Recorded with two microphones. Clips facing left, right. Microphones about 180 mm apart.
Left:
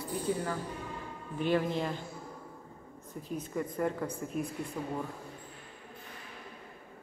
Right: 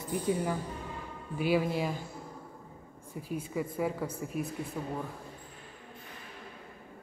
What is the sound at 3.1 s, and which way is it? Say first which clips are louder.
Speech: right 1 dB; 10° right (ahead or behind).